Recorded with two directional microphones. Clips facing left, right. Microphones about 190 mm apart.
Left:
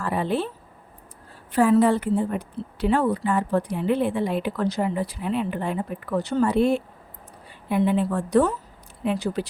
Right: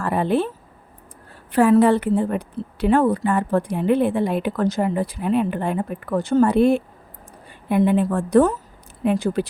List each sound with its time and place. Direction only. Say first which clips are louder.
0.0 s a sound: right 4 dB; 55° right (ahead or behind)
1.5 s a woman's voice: right 3 dB; 65° right (ahead or behind)
2.8 s a woman's voice: right 4 dB; 50° right (ahead or behind)